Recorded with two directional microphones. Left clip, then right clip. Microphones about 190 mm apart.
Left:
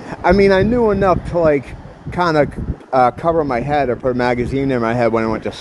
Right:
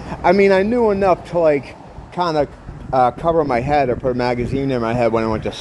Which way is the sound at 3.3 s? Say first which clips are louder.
Right 1 dB; 5° left (ahead or behind).